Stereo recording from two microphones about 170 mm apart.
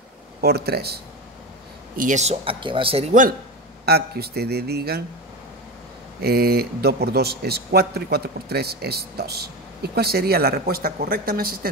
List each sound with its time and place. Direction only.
0.4 s a man's voice: 70° right (ahead or behind)
2.0 s speech: 45° right (ahead or behind)
3.8 s a man's voice: 70° right (ahead or behind)
6.2 s a man's voice: 65° right (ahead or behind)